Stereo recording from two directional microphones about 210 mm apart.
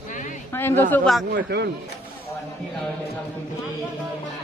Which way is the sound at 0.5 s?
10° left (ahead or behind).